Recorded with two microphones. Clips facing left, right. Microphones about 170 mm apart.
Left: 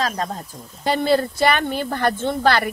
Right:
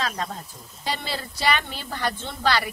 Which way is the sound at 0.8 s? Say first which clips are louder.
Left 12 dB; 50° left (ahead or behind).